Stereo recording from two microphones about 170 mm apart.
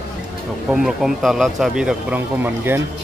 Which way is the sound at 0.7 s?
5° right (ahead or behind).